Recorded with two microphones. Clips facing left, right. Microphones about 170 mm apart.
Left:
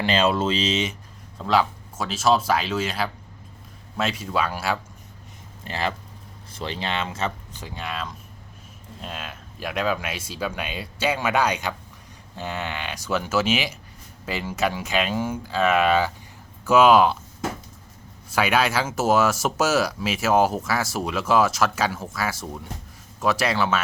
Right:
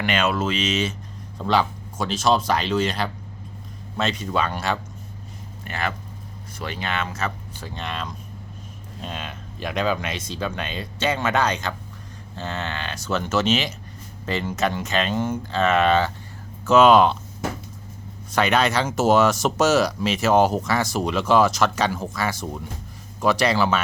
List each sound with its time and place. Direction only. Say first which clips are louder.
0.0 s speech: left 1 dB; 30° left (ahead or behind)
1.4 s speech: even; centre (ahead or behind)
5.6 s speech: left 1 dB; 30° left (ahead or behind)
7.7 s speech: right 1 dB; 5° left (ahead or behind)
18.3 s speech: right 1 dB; 5° left (ahead or behind)